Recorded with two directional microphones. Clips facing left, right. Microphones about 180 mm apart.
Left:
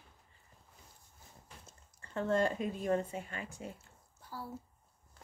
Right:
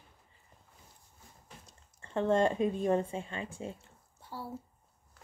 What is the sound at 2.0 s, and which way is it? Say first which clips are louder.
A woman's voice: right 4 dB; 25° right (ahead or behind).